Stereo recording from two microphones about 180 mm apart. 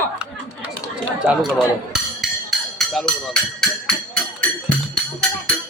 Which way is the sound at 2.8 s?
Centre (ahead or behind).